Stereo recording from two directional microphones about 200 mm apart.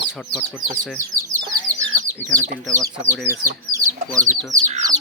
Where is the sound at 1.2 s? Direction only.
15° right (ahead or behind).